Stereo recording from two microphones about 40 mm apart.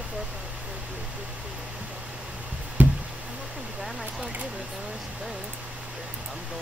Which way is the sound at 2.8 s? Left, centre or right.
Right.